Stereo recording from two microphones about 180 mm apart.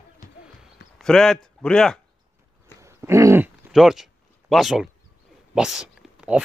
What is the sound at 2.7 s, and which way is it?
Wild animals, 15° right (ahead or behind).